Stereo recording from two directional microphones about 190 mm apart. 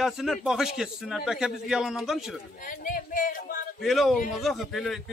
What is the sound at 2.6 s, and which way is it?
Speech, 45° left (ahead or behind).